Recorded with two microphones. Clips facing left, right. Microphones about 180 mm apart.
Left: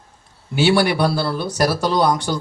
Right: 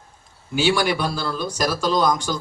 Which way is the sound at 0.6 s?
65° left (ahead or behind).